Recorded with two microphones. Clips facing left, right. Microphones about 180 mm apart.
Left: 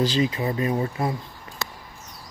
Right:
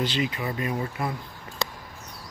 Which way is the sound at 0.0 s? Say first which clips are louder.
Left 5 dB; 35° left (ahead or behind).